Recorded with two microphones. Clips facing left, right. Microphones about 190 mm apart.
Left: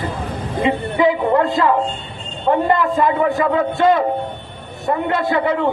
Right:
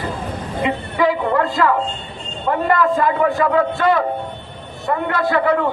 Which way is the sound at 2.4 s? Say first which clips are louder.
Left 1 dB; 20° left (ahead or behind).